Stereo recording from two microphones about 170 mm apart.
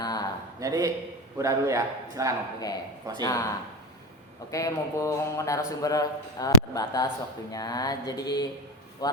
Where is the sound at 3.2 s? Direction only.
20° left (ahead or behind).